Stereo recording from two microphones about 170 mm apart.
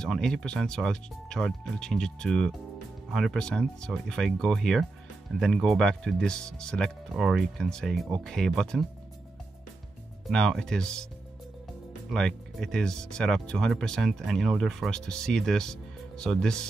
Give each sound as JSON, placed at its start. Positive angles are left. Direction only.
{"t": 0.0, "sound": "speech", "side_deg": 5}
{"t": 10.2, "sound": "speech", "side_deg": 0}
{"t": 12.1, "sound": "speech", "side_deg": 5}